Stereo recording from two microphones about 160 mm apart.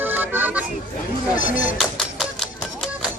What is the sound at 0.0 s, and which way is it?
Music, 10° right (ahead or behind).